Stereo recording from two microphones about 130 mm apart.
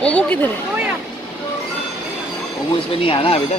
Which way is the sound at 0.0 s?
10° left (ahead or behind).